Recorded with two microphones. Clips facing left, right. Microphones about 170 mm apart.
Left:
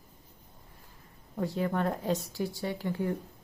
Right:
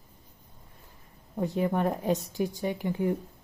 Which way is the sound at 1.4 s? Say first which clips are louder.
Right 3 dB; 20° right (ahead or behind).